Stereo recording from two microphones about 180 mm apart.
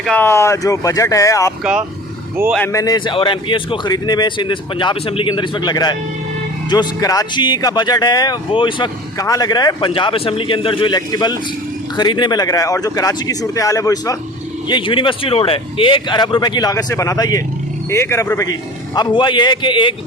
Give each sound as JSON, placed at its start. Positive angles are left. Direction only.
{"t": 0.0, "sound": "speech", "side_deg": 10}
{"t": 2.6, "sound": "speech", "side_deg": 20}